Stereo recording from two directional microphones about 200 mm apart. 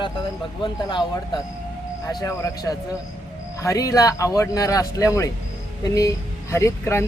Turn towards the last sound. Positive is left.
turn(degrees=15)  # may be behind; listen again after turning